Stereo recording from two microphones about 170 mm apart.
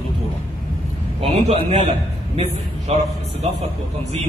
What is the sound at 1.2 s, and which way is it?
A man's voice, 35° right (ahead or behind).